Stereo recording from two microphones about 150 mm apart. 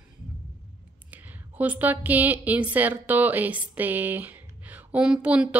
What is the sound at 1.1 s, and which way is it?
A woman's voice, 10° right (ahead or behind).